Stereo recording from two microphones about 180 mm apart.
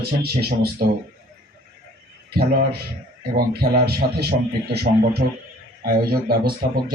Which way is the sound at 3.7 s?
60° right (ahead or behind).